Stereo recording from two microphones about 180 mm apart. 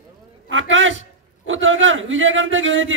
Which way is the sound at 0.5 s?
90° right.